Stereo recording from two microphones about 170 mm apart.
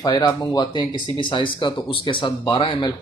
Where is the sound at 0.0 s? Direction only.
25° left (ahead or behind).